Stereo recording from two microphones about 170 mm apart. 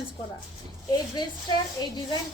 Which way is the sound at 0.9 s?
25° left (ahead or behind).